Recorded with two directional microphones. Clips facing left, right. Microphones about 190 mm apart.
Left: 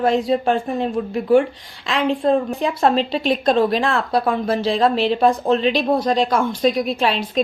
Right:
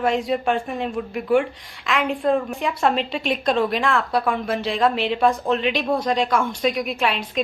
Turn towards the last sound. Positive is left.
turn(degrees=35)  # may be behind; listen again after turning